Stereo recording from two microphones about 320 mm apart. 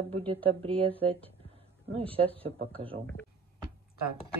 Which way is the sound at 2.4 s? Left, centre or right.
Centre.